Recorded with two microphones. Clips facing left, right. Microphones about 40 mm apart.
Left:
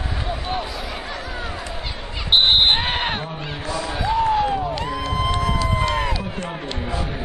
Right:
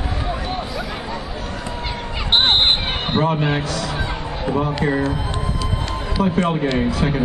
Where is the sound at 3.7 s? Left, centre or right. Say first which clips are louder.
Right 1 dB; right.